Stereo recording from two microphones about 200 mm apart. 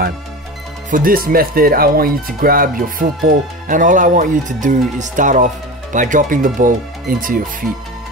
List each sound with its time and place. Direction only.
0.8 s speech: 45° right (ahead or behind)